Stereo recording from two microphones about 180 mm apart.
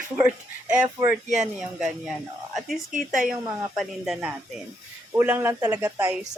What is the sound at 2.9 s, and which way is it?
Speech, 45° right (ahead or behind).